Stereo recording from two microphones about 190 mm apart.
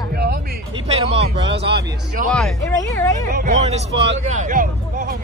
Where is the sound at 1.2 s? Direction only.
65° right (ahead or behind).